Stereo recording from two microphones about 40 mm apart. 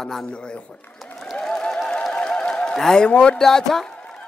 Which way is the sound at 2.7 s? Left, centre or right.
Centre.